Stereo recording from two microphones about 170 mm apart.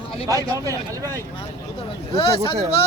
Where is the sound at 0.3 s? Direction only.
20° right (ahead or behind).